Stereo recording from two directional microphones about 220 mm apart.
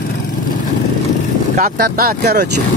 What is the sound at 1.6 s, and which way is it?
Speech, 40° right (ahead or behind).